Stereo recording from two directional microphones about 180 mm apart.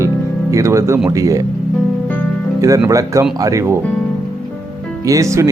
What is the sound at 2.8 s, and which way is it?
Speech, 15° right (ahead or behind).